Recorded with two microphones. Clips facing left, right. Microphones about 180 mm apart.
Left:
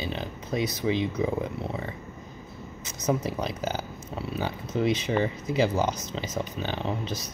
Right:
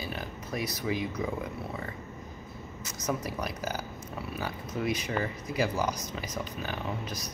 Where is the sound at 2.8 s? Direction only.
20° left (ahead or behind).